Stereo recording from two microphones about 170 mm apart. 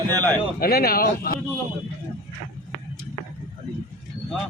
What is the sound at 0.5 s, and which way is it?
Speech, 60° left (ahead or behind).